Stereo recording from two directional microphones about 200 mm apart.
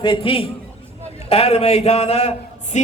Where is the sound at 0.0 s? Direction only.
25° left (ahead or behind).